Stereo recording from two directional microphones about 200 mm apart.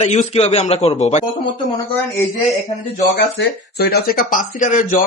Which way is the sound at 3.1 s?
55° left (ahead or behind).